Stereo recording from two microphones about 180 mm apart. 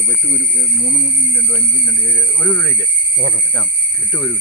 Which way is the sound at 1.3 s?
20° left (ahead or behind).